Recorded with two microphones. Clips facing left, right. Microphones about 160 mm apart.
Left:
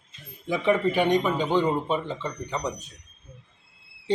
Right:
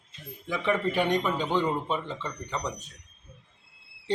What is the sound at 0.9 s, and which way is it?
Speech, centre (ahead or behind).